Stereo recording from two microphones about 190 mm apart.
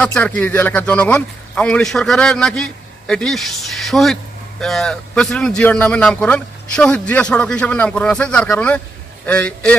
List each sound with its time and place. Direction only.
0.0 s a man's voice: 5° left (ahead or behind)